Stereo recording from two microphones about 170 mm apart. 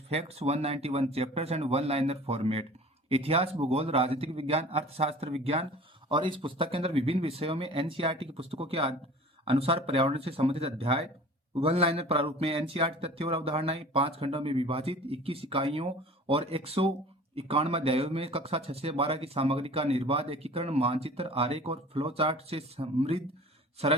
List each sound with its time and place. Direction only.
0.1 s speech: 40° right (ahead or behind)